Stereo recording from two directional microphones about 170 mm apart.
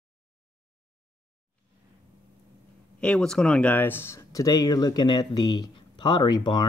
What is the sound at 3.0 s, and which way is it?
Speech, 5° left (ahead or behind).